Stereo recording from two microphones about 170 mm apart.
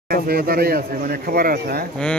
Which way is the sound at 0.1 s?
60° right (ahead or behind).